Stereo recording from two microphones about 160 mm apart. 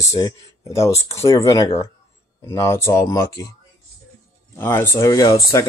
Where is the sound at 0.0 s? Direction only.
20° left (ahead or behind).